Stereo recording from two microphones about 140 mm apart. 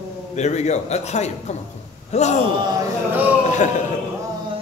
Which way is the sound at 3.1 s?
10° right (ahead or behind).